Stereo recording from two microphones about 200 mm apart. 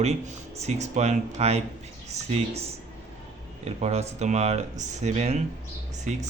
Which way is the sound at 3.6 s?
35° right (ahead or behind).